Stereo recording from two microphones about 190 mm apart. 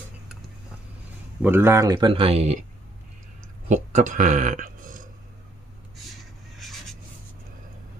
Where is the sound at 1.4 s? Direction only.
10° right (ahead or behind); by 2.6 s 35° right (ahead or behind).